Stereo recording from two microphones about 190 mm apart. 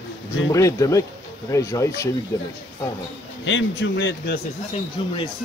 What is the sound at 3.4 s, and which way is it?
Speech, 75° left (ahead or behind).